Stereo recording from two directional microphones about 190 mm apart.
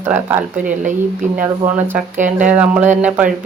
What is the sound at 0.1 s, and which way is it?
Speech, 10° right (ahead or behind).